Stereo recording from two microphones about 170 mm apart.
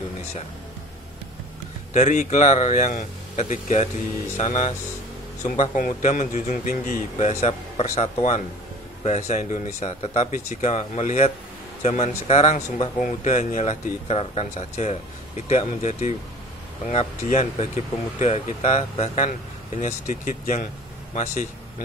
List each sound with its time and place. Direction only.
2.0 s speech: 45° left (ahead or behind)